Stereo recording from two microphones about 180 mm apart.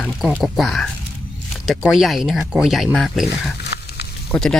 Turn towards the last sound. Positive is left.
turn(degrees=5)  # may be behind; listen again after turning